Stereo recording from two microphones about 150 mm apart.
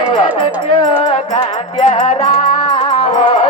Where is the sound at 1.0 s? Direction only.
45° left (ahead or behind).